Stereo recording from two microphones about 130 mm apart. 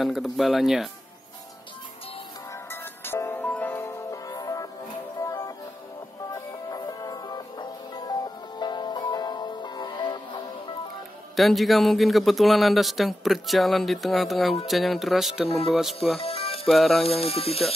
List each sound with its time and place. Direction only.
0.0 s a man's voice: centre (ahead or behind)
2.7 s music: 15° left (ahead or behind); by 10.2 s 35° left (ahead or behind)
11.3 s a man's voice: centre (ahead or behind)
15.4 s speech: 50° left (ahead or behind)
15.7 s a man's voice: centre (ahead or behind)
16.2 s music: 50° left (ahead or behind)
16.6 s a man's voice: centre (ahead or behind)
17.2 s speech: 50° left (ahead or behind)